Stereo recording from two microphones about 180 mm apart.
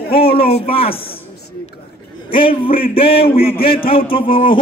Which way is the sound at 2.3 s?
30° left (ahead or behind).